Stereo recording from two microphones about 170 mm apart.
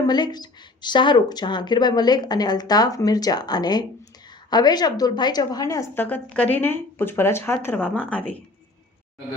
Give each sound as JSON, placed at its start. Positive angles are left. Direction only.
{"t": 0.1, "sound": "a woman's voice", "side_deg": 25}